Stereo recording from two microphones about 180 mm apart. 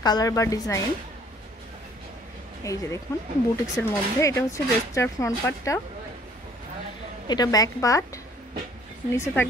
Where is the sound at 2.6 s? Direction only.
15° left (ahead or behind).